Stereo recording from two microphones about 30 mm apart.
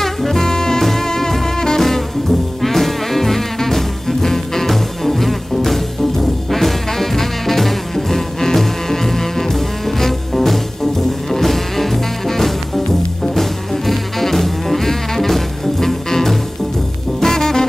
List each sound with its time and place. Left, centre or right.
0.0 s music: centre